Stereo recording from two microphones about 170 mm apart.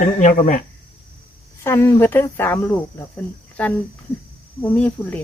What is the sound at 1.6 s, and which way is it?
Speech, 15° left (ahead or behind).